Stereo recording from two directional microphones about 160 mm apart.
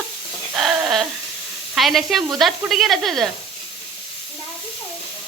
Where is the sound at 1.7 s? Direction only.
Centre (ahead or behind).